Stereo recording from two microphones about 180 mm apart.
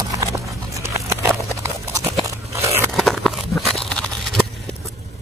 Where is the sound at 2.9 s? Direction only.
Centre (ahead or behind).